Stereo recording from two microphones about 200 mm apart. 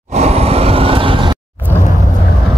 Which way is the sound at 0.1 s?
30° right (ahead or behind).